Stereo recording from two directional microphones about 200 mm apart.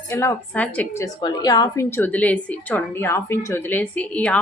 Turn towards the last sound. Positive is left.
turn(degrees=5)  # may be behind; listen again after turning